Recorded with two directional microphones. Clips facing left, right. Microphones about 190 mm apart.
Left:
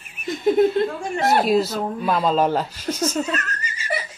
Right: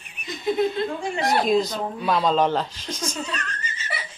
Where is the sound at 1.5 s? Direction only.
5° left (ahead or behind).